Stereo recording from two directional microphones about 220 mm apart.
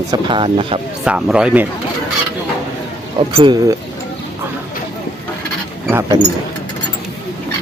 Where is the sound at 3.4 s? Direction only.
20° right (ahead or behind).